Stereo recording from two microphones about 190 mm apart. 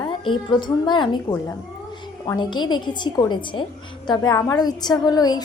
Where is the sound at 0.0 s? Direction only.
25° left (ahead or behind).